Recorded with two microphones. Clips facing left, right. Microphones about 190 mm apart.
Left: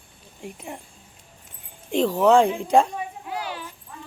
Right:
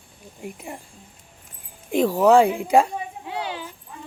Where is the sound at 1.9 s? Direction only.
10° right (ahead or behind).